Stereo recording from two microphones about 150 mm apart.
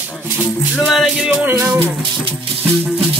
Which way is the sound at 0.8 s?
Centre (ahead or behind).